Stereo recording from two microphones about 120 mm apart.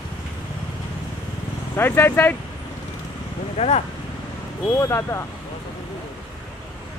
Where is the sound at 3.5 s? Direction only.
65° left (ahead or behind).